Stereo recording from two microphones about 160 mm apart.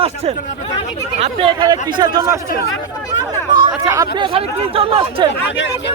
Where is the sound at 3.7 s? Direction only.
15° right (ahead or behind).